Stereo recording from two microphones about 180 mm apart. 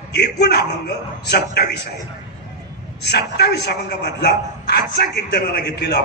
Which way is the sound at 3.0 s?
65° left (ahead or behind).